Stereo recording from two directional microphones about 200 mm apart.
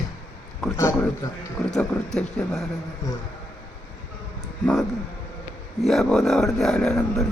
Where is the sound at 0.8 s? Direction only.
15° left (ahead or behind).